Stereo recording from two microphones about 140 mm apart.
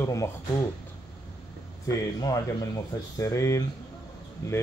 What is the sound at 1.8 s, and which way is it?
Speech, 25° left (ahead or behind).